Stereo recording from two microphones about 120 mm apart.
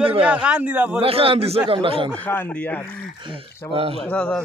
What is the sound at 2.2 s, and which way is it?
Speech, 15° left (ahead or behind).